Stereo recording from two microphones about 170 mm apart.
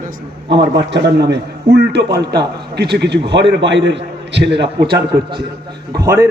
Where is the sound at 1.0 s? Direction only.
80° right.